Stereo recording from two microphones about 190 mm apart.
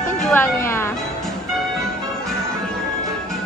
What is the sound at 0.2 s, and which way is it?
Speech, 10° left (ahead or behind).